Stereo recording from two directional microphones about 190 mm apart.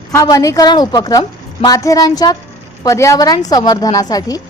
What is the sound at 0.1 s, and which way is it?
A woman's voice, 15° left (ahead or behind).